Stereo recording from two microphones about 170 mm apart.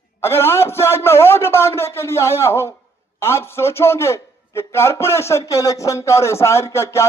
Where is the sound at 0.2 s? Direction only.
15° left (ahead or behind).